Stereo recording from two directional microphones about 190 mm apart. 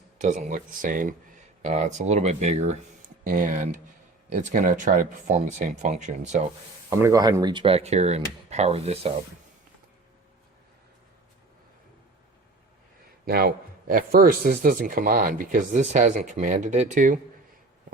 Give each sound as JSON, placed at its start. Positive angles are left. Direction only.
{"t": 0.2, "sound": "speech", "side_deg": -40}
{"t": 3.2, "sound": "speech", "side_deg": -45}
{"t": 7.0, "sound": "speech", "side_deg": -20}
{"t": 13.2, "sound": "speech", "side_deg": -55}